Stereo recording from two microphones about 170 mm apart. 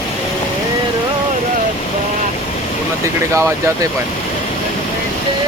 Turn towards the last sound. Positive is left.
turn(degrees=-20)  # may be behind; listen again after turning